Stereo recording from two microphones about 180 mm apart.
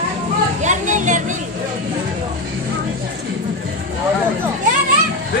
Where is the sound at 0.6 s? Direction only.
45° right (ahead or behind).